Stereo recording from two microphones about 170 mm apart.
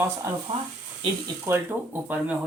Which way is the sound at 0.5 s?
40° right (ahead or behind).